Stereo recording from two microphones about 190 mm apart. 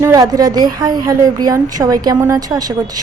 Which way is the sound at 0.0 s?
20° right (ahead or behind).